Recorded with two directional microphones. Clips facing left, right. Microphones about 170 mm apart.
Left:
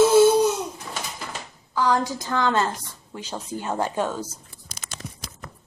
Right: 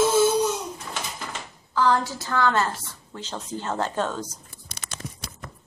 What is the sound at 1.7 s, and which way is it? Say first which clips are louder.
A woman's voice: even; 10° left (ahead or behind).